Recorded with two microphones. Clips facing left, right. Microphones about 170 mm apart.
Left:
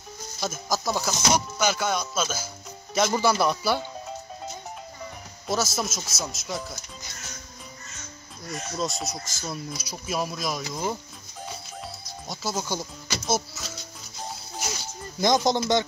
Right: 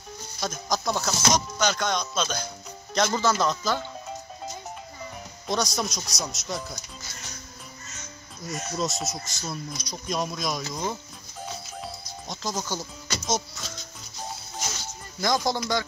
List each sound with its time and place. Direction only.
0.4 s music: 5° left (ahead or behind)
5.5 s speech: 5° left (ahead or behind)
8.5 s speech: centre (ahead or behind)
11.8 s music: 5° left (ahead or behind)
15.1 s speech: 20° left (ahead or behind)